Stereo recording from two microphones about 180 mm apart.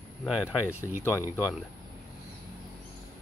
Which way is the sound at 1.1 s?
15° left (ahead or behind).